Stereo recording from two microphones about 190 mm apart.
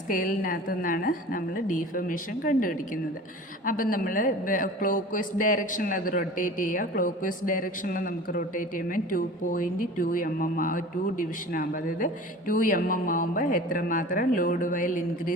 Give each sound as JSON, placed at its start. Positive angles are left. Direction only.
{"t": 0.1, "sound": "a man's voice", "side_deg": 45}